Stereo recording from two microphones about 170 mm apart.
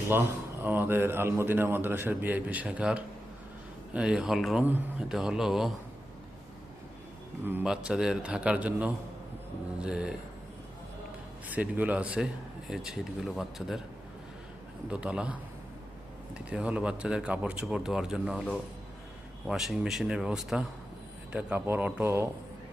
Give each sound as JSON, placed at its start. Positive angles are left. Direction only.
{"t": 0.1, "sound": "a man's voice", "side_deg": -10}
{"t": 7.4, "sound": "a man's voice", "side_deg": -10}
{"t": 11.4, "sound": "a man's voice", "side_deg": -10}
{"t": 14.8, "sound": "a man's voice", "side_deg": -5}